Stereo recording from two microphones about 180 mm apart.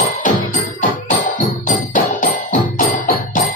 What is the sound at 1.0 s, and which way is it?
Music, 45° left (ahead or behind).